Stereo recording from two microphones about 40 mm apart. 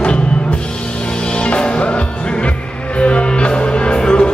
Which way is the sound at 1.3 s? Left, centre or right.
Left.